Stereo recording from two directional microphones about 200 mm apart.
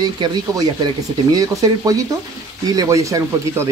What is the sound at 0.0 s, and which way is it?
Speech, 20° right (ahead or behind).